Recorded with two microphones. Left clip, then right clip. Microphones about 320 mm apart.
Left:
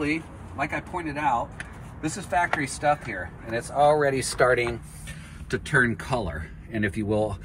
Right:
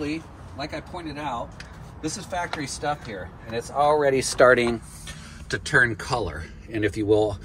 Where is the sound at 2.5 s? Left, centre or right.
Centre.